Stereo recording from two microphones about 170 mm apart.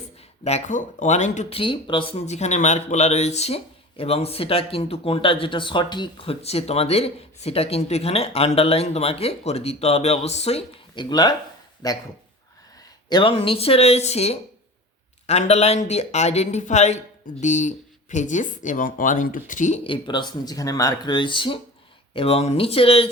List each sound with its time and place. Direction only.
0.4 s speech: 45° left (ahead or behind); by 12.0 s 20° left (ahead or behind)
13.1 s speech: 25° left (ahead or behind); by 19.8 s 45° left (ahead or behind)
19.8 s speech: 30° left (ahead or behind)